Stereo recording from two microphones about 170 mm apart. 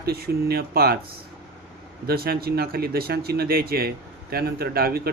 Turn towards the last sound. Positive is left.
turn(degrees=-65)  # may be behind; listen again after turning